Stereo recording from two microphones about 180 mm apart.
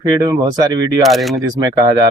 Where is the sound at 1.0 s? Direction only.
Centre (ahead or behind).